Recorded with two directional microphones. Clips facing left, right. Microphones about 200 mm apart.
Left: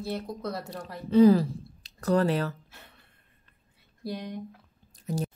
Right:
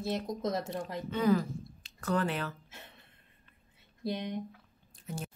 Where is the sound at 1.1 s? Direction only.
35° left (ahead or behind).